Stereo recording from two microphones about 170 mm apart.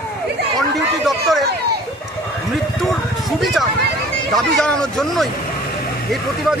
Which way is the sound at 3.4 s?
Centre (ahead or behind).